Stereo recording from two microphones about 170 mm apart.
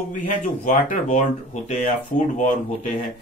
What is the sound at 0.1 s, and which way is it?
Speech, 50° left (ahead or behind).